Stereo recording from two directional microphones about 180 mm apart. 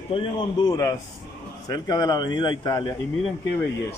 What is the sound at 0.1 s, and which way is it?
Speech, 30° left (ahead or behind).